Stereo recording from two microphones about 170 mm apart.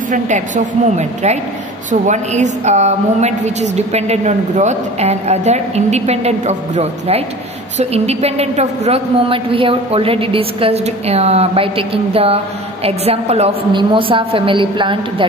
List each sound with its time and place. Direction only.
0.8 s a woman's voice: 40° right (ahead or behind)